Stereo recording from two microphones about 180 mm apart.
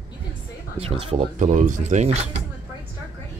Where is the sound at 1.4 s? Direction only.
45° right (ahead or behind).